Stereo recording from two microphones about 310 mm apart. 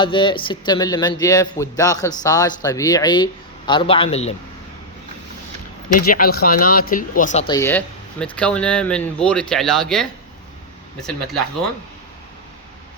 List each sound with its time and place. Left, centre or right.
0.0 s a man's voice: centre
6.0 s speech: left; by 11.4 s centre